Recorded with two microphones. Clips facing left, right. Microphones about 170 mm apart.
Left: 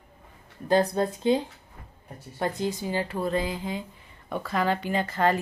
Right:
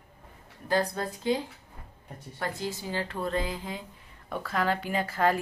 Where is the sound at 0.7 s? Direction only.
20° left (ahead or behind).